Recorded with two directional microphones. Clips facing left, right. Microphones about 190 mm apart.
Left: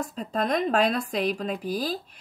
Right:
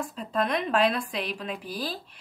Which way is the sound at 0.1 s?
40° left (ahead or behind).